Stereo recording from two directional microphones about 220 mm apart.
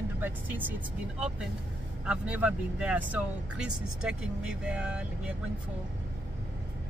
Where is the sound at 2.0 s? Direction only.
5° right (ahead or behind).